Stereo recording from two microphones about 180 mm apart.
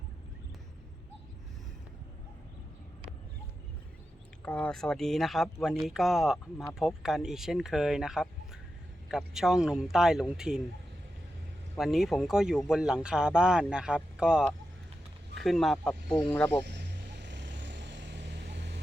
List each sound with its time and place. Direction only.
4.4 s speech: 5° left (ahead or behind)
11.8 s speech: centre (ahead or behind)
16.6 s vehicle: 70° right (ahead or behind)